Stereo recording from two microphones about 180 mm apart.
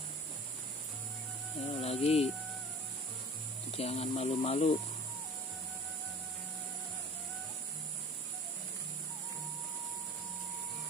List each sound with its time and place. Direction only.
1.7 s speech: 35° left (ahead or behind)
3.7 s speech: 35° left (ahead or behind)